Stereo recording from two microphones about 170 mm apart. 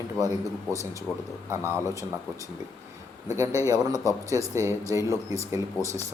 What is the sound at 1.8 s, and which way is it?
Speech, 20° right (ahead or behind).